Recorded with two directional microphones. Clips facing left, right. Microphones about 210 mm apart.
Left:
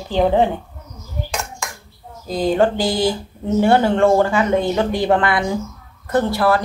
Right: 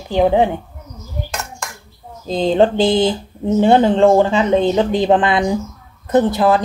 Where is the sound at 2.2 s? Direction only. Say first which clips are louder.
Right 3 dB; 25° right (ahead or behind).